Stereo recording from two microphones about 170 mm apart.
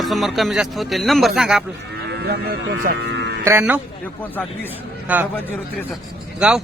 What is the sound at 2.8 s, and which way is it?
Speech, 70° right (ahead or behind).